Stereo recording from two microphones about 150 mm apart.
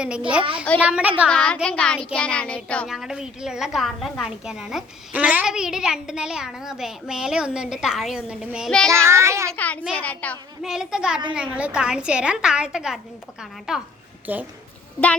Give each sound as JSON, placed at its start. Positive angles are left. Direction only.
{"t": 0.0, "sound": "a woman's voice", "side_deg": -5}
{"t": 1.3, "sound": "child singing", "side_deg": 5}
{"t": 2.6, "sound": "a child's voice", "side_deg": 5}
{"t": 9.0, "sound": "a child's voice", "side_deg": -20}
{"t": 9.6, "sound": "child singing", "side_deg": 10}
{"t": 10.6, "sound": "a child's voice", "side_deg": -5}